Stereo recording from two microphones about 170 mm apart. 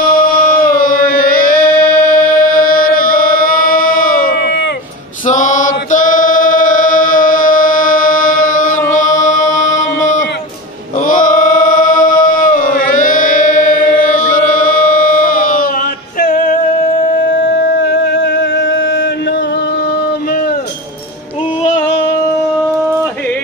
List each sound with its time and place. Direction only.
0.2 s music: 55° left (ahead or behind)
5.2 s mantra: 50° left (ahead or behind)
8.9 s music: 50° left (ahead or behind)
11.1 s male singing: 50° left (ahead or behind)
16.2 s music: 50° left (ahead or behind)
17.5 s music: 75° left (ahead or behind); by 19.0 s 90° left
21.6 s music: 30° left (ahead or behind)